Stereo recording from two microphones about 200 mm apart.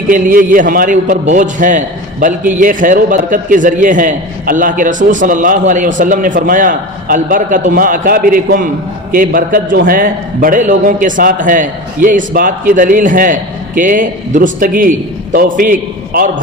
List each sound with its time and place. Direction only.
0.1 s a man's voice: 45° right (ahead or behind)